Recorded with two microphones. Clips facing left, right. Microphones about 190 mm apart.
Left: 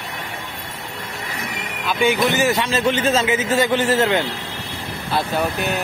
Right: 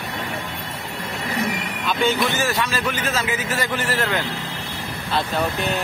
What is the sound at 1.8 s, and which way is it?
A man's voice, 15° left (ahead or behind).